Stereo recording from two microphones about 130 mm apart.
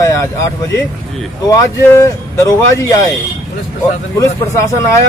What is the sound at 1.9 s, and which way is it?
Speech, 25° left (ahead or behind).